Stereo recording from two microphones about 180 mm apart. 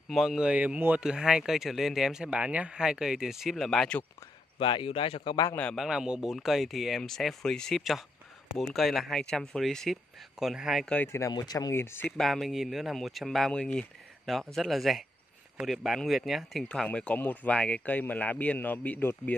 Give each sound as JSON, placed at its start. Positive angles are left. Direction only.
{"t": 0.1, "sound": "a man's voice", "side_deg": 0}
{"t": 4.6, "sound": "speech", "side_deg": 30}
{"t": 5.6, "sound": "a man's voice", "side_deg": 0}
{"t": 12.2, "sound": "a man's voice", "side_deg": 0}